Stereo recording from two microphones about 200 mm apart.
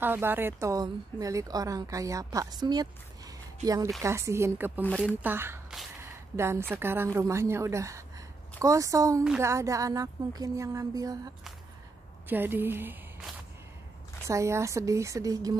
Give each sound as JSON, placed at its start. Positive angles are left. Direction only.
{"t": 0.0, "sound": "a woman's voice", "side_deg": -10}
{"t": 4.8, "sound": "speech", "side_deg": 5}
{"t": 5.2, "sound": "a woman's voice", "side_deg": -10}
{"t": 9.2, "sound": "speech", "side_deg": -5}
{"t": 9.5, "sound": "a woman's voice", "side_deg": -15}
{"t": 14.2, "sound": "a woman's voice", "side_deg": -15}